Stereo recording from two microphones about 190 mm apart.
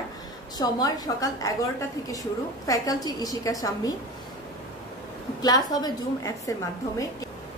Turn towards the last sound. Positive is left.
turn(degrees=20)  # may be behind; listen again after turning